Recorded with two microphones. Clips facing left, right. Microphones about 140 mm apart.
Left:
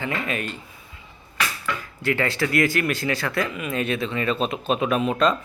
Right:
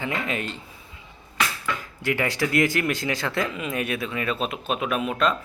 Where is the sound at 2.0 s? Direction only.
15° right (ahead or behind).